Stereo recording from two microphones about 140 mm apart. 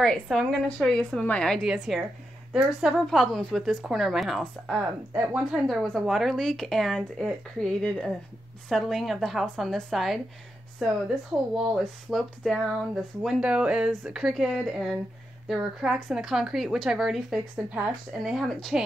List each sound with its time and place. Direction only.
0.0 s speech: 5° left (ahead or behind)
5.1 s speech: 20° right (ahead or behind)
5.5 s speech: centre (ahead or behind)